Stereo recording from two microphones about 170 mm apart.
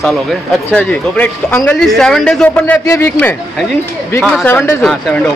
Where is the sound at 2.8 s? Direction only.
15° left (ahead or behind).